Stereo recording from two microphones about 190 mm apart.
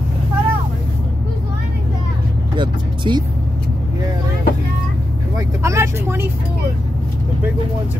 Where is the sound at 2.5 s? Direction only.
25° right (ahead or behind).